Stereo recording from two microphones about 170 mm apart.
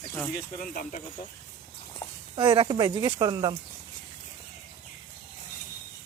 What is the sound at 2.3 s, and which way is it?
Speech, 25° right (ahead or behind).